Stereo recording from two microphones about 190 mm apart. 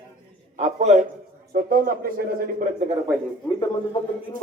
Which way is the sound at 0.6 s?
35° right (ahead or behind).